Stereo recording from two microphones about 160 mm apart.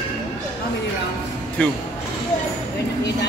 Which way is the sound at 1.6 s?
5° left (ahead or behind).